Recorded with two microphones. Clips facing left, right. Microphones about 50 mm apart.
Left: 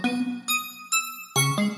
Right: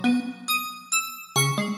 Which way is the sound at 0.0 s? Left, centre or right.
Centre.